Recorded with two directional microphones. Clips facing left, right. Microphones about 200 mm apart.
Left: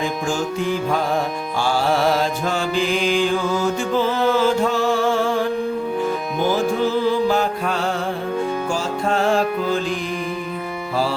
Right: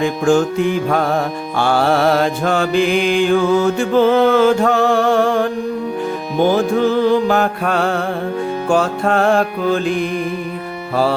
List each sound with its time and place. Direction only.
0.0 s mantra: 60° right (ahead or behind)
6.5 s music: 60° right (ahead or behind)
8.7 s mantra: 60° right (ahead or behind)